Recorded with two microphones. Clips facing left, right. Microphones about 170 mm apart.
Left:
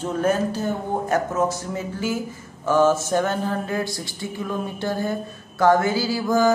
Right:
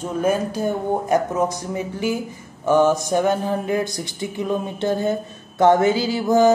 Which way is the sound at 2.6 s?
15° right (ahead or behind).